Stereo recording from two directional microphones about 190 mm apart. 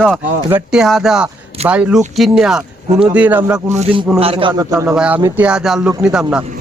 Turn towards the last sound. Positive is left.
turn(degrees=-10)  # may be behind; listen again after turning